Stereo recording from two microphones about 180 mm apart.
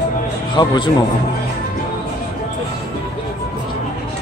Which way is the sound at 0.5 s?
25° left (ahead or behind).